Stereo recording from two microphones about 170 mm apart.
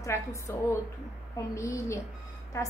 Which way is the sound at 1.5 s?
15° left (ahead or behind).